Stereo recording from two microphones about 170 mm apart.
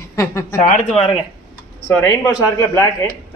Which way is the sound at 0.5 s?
50° left (ahead or behind).